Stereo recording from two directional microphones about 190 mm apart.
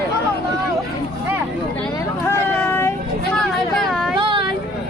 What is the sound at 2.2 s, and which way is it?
Vehicle, 10° left (ahead or behind).